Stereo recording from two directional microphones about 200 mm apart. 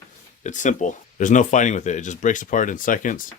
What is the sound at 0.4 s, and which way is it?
Speech, 40° left (ahead or behind).